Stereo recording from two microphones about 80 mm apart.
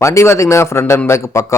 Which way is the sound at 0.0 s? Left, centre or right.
Left.